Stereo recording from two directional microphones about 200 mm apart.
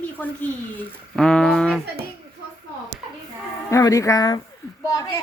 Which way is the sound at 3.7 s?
15° left (ahead or behind).